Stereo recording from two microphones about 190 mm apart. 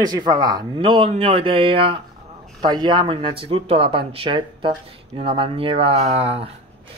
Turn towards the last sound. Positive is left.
turn(degrees=-30)  # may be behind; listen again after turning